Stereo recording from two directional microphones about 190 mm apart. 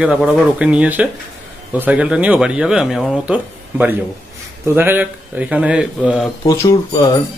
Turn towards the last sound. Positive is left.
turn(degrees=20)  # may be behind; listen again after turning